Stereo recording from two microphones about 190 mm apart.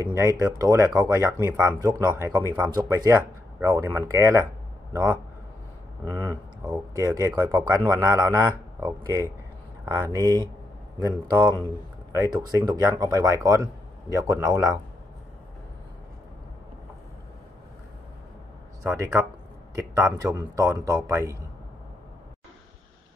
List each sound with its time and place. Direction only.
0.1 s speech: 15° right (ahead or behind)
18.9 s speech: 15° right (ahead or behind)